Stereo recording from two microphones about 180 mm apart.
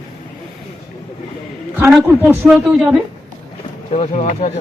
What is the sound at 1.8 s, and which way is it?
A woman's voice, 5° right (ahead or behind).